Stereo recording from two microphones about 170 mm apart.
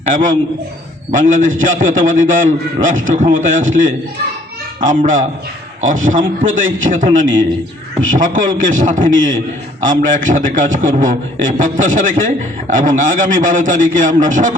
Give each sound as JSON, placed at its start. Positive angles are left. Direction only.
{"t": 0.1, "sound": "a man's voice", "side_deg": -50}